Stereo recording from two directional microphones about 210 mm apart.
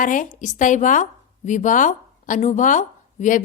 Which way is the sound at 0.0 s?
40° left (ahead or behind).